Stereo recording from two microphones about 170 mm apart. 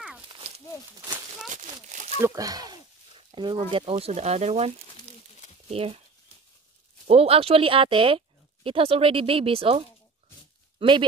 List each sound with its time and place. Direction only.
1.5 s speech: 45° right (ahead or behind)
2.2 s a sound: 20° right (ahead or behind)
3.5 s speech: 35° right (ahead or behind)
7.1 s speech: 35° right (ahead or behind)